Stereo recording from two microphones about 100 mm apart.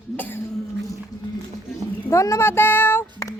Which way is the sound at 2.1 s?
30° left (ahead or behind).